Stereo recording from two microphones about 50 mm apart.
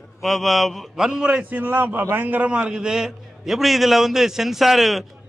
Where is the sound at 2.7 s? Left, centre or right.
Centre.